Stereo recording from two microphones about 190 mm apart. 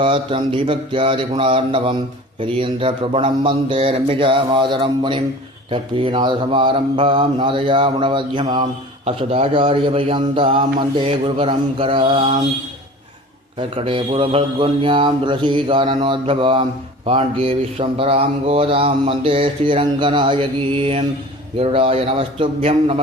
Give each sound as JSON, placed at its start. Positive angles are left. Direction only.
{"t": 0.0, "sound": "speech", "side_deg": -25}
{"t": 13.6, "sound": "a man's voice", "side_deg": -25}